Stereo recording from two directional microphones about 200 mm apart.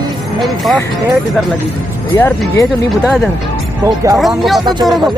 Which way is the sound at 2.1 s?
10° left (ahead or behind).